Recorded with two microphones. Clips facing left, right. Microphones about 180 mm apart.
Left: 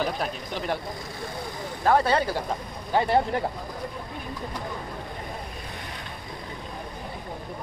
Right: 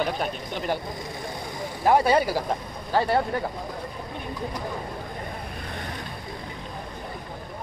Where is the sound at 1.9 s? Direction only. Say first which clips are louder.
Right 2 dB; 10° right (ahead or behind).